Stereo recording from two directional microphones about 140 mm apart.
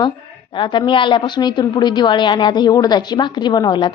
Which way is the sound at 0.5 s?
35° left (ahead or behind).